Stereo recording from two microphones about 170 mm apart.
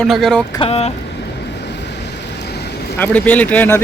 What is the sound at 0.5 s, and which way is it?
Speech, 35° left (ahead or behind).